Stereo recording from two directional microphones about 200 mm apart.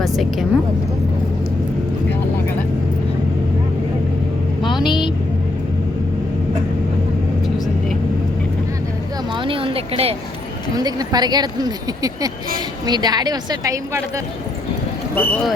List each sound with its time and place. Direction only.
4.9 s vehicle: 25° left (ahead or behind)
9.3 s a sound: 25° right (ahead or behind)
10.8 s speech: 20° right (ahead or behind)
15.1 s speech: 10° left (ahead or behind)